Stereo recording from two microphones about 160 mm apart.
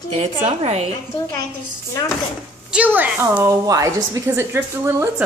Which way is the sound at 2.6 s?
10° right (ahead or behind).